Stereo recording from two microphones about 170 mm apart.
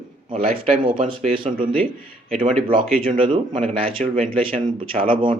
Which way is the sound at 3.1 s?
30° right (ahead or behind).